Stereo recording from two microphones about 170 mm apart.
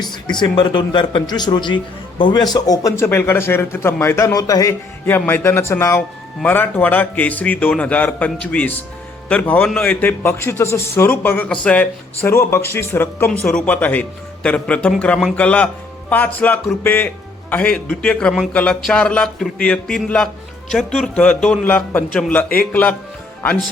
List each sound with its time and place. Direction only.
0.3 s speech: 25° left (ahead or behind); by 23.0 s 10° left (ahead or behind)